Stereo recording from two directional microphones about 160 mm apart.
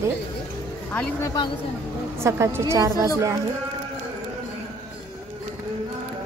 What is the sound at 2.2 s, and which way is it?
Speech, 15° right (ahead or behind).